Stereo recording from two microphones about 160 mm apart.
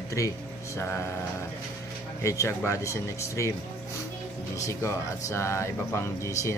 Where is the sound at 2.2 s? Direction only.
20° left (ahead or behind).